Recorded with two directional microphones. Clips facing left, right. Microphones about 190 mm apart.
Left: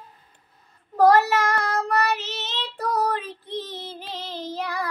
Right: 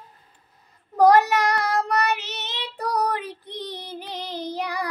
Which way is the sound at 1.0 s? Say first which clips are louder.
Right 1 dB; 15° right (ahead or behind).